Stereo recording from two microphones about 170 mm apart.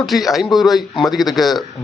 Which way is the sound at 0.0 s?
Centre (ahead or behind).